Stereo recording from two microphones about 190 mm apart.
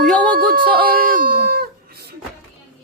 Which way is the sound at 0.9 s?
45° right (ahead or behind).